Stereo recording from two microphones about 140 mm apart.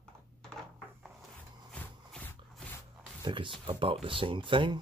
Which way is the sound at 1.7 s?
5° left (ahead or behind).